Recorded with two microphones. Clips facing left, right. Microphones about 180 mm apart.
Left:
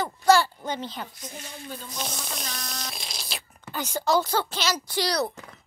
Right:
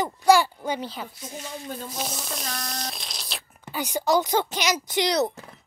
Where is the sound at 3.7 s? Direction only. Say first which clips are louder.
Right 1 dB; 15° right (ahead or behind).